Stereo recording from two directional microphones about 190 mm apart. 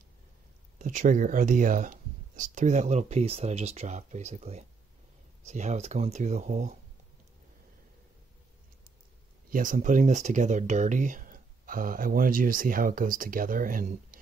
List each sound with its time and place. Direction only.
0.7 s speech: 45° right (ahead or behind)
9.5 s speech: 45° right (ahead or behind)